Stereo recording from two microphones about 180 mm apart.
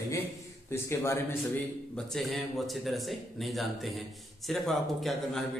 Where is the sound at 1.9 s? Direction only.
Centre (ahead or behind).